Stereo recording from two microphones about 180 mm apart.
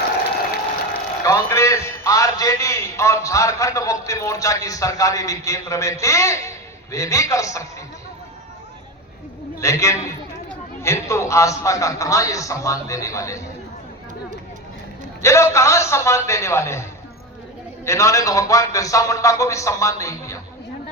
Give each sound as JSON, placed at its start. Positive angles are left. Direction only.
{"t": 1.2, "sound": "a man's voice", "side_deg": 15}
{"t": 9.6, "sound": "a man's voice", "side_deg": 15}
{"t": 15.2, "sound": "a man's voice", "side_deg": 15}
{"t": 17.8, "sound": "a man's voice", "side_deg": 15}